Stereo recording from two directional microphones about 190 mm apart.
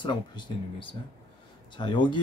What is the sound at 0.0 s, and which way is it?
Speech, 25° left (ahead or behind).